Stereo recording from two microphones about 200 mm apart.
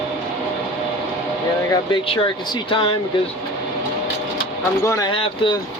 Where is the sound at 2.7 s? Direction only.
25° left (ahead or behind).